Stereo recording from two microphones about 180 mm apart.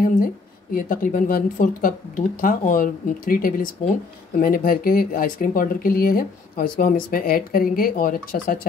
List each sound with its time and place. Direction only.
0.7 s speech: 50° left (ahead or behind)